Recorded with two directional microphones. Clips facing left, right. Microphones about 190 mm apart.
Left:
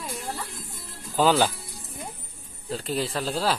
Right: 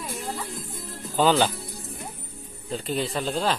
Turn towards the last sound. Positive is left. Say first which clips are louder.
# right 1 dB
turn(degrees=5)  # may be behind; listen again after turning